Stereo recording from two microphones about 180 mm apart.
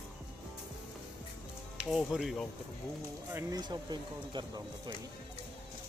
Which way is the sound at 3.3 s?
15° right (ahead or behind).